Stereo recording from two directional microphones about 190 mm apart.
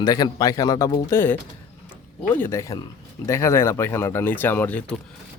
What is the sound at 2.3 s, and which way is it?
Speech, 15° left (ahead or behind).